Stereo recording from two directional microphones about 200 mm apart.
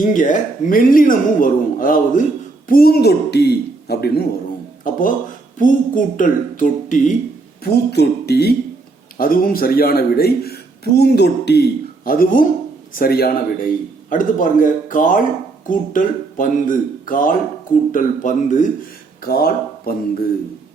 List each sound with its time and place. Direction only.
0.0 s speech: 40° left (ahead or behind)
4.8 s speech: 40° left (ahead or behind)
7.6 s speech: 55° left (ahead or behind); by 18.7 s 40° left (ahead or behind)
19.2 s speech: 50° left (ahead or behind)